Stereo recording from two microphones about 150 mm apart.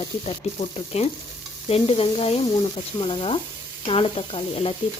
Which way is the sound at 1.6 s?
40° left (ahead or behind).